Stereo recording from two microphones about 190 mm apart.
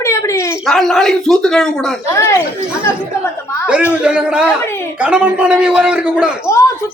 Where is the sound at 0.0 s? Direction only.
15° left (ahead or behind).